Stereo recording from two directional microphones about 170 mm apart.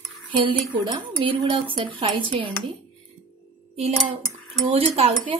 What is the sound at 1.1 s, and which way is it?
A woman's voice, 30° right (ahead or behind).